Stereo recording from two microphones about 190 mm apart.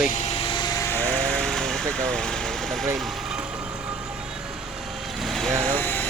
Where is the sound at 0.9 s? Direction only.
10° left (ahead or behind).